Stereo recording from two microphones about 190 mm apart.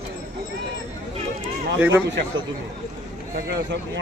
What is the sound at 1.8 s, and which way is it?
Speech, 10° right (ahead or behind).